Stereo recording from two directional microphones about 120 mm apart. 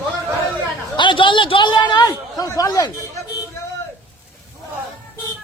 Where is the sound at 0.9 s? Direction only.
40° left (ahead or behind).